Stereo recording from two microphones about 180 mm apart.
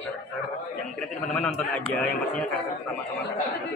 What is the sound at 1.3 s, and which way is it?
Speech, 10° left (ahead or behind).